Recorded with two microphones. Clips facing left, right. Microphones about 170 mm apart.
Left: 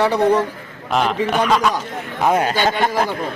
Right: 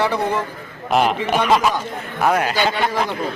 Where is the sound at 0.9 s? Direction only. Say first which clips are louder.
Right 1 dB; 10° right (ahead or behind).